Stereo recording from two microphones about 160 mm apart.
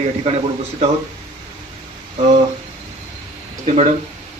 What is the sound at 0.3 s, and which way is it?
Speech, 40° right (ahead or behind).